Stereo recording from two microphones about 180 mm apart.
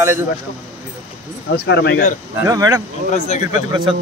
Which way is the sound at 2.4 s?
20° right (ahead or behind).